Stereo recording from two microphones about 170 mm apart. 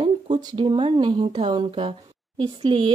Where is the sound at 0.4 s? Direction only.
25° right (ahead or behind).